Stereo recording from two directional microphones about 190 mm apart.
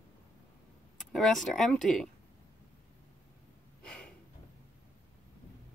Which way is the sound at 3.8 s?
5° left (ahead or behind).